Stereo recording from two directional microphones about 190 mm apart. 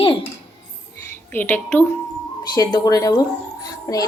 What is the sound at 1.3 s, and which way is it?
Speech, 10° left (ahead or behind).